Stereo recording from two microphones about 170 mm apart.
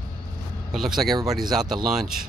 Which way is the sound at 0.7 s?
Centre (ahead or behind).